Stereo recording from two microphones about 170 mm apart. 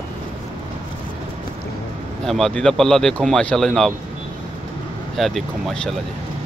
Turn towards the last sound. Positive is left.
turn(degrees=0)  # may be behind; listen again after turning